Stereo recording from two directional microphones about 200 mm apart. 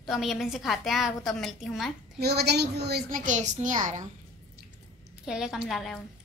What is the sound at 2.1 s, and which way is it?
A woman's voice, 55° right (ahead or behind).